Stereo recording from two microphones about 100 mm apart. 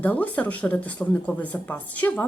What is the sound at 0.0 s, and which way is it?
A woman's voice, 15° left (ahead or behind).